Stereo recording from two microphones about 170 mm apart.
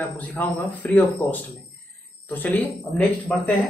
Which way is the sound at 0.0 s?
10° left (ahead or behind).